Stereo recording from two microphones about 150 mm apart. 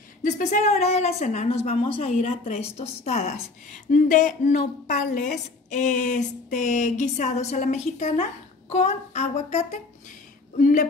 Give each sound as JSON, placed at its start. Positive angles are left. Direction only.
{"t": 0.2, "sound": "speech", "side_deg": 55}
{"t": 3.9, "sound": "a woman's voice", "side_deg": 60}